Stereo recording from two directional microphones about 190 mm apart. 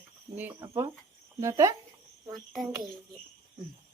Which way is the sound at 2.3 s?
Centre (ahead or behind).